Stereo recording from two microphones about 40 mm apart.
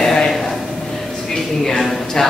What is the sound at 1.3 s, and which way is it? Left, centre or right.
Speech, centre.